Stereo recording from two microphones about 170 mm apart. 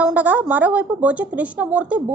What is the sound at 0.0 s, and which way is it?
Speech, 10° right (ahead or behind).